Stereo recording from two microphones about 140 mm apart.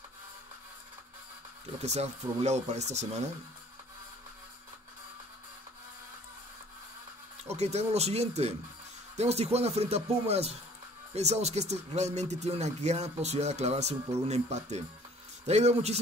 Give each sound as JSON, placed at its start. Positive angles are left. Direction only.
{"t": 1.8, "sound": "speech", "side_deg": -50}
{"t": 7.4, "sound": "speech", "side_deg": -50}